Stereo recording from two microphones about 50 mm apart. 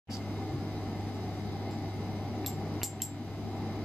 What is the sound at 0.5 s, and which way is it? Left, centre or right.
Vehicle, centre.